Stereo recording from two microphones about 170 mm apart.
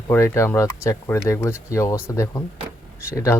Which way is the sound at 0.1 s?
15° left (ahead or behind).